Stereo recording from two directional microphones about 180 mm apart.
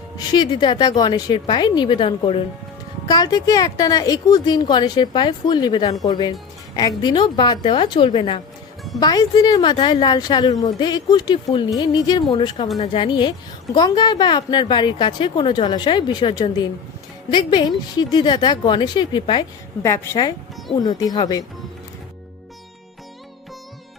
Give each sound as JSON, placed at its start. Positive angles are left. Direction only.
{"t": 0.2, "sound": "speech", "side_deg": 20}
{"t": 19.8, "sound": "a woman's voice", "side_deg": 15}